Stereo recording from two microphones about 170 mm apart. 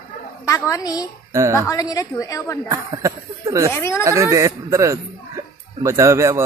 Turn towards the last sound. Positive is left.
turn(degrees=-15)  # may be behind; listen again after turning